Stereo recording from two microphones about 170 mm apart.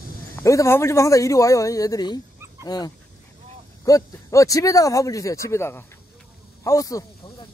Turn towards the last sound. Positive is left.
turn(degrees=20)  # may be behind; listen again after turning